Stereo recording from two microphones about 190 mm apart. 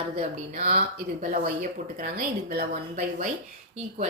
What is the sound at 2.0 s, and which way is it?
Speech, 50° right (ahead or behind).